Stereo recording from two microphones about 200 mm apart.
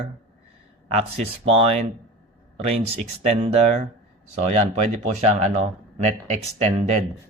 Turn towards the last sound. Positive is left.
turn(degrees=-35)  # may be behind; listen again after turning